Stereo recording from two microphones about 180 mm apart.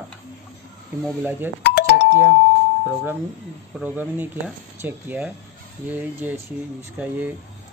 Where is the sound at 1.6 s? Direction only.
65° left (ahead or behind).